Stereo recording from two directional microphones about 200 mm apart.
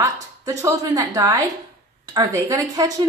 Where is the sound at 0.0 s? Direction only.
15° right (ahead or behind).